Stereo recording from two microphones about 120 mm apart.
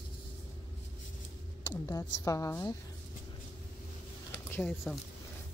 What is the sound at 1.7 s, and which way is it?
Speech, 30° left (ahead or behind).